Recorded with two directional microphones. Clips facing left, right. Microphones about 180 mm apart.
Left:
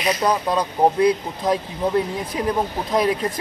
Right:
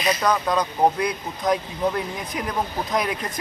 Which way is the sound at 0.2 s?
30° left (ahead or behind).